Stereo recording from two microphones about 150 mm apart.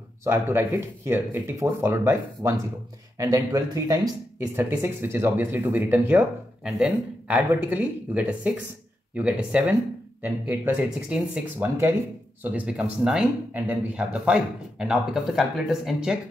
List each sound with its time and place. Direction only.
0.2 s speech: 15° right (ahead or behind)